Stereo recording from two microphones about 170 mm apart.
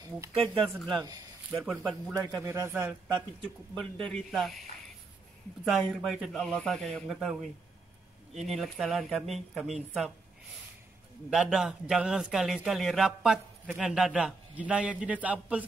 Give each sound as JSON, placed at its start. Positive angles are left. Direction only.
{"t": 0.3, "sound": "speech", "side_deg": -35}
{"t": 0.7, "sound": "a man's voice", "side_deg": 0}
{"t": 0.9, "sound": "speech", "side_deg": -20}
{"t": 1.5, "sound": "a man's voice", "side_deg": -5}
{"t": 2.1, "sound": "speech", "side_deg": -20}
{"t": 3.7, "sound": "a man's voice", "side_deg": 5}
{"t": 5.7, "sound": "a man's voice", "side_deg": 0}
{"t": 8.4, "sound": "a man's voice", "side_deg": 0}
{"t": 11.2, "sound": "a man's voice", "side_deg": -5}